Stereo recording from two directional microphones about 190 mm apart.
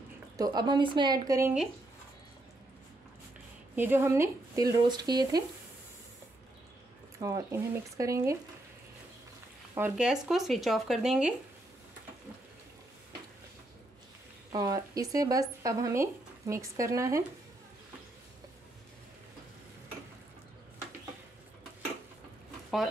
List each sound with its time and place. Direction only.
0.4 s speech: 20° right (ahead or behind)
3.7 s speech: 10° right (ahead or behind)
7.2 s speech: 20° right (ahead or behind)
9.8 s speech: 5° right (ahead or behind)
14.5 s speech: 20° right (ahead or behind)